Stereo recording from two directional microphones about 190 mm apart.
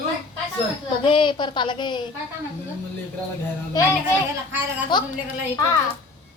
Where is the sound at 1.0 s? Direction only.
25° left (ahead or behind).